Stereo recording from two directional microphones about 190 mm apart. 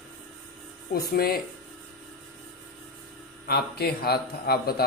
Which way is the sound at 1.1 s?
55° left (ahead or behind).